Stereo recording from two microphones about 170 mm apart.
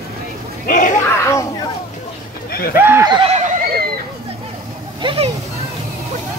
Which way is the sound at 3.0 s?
25° right (ahead or behind).